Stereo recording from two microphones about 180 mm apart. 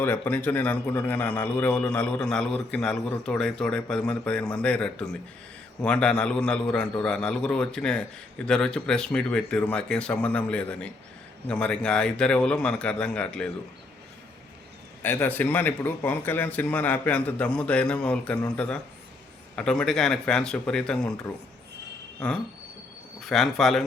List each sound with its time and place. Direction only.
0.0 s a man's voice: 10° left (ahead or behind)
15.0 s a man's voice: 10° left (ahead or behind)
23.2 s a man's voice: centre (ahead or behind)